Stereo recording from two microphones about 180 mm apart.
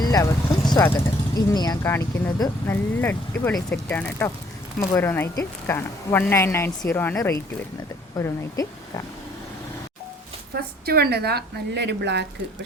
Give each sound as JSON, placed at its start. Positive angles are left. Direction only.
{"t": 0.0, "sound": "vehicle", "side_deg": 20}
{"t": 0.8, "sound": "speech", "side_deg": 10}
{"t": 10.5, "sound": "a woman's voice", "side_deg": -60}